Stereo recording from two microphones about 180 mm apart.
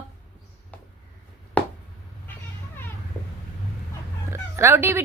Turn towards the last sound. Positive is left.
turn(degrees=-15)  # may be behind; listen again after turning